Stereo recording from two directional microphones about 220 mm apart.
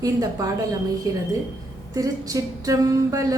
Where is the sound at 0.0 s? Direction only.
15° right (ahead or behind).